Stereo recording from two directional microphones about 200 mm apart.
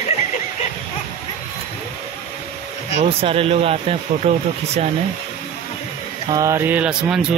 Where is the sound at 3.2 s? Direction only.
30° right (ahead or behind).